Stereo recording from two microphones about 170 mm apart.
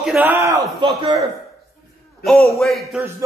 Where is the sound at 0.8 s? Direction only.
30° right (ahead or behind).